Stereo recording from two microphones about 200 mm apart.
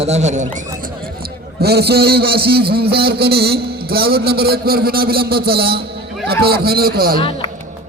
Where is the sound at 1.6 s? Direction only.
55° right (ahead or behind).